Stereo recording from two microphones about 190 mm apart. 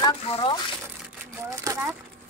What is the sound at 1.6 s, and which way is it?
Speech, 15° right (ahead or behind).